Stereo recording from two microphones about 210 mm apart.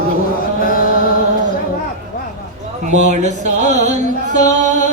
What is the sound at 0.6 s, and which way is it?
Chant, 40° left (ahead or behind).